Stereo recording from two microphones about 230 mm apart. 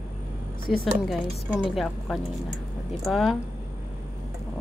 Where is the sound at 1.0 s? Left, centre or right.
Centre.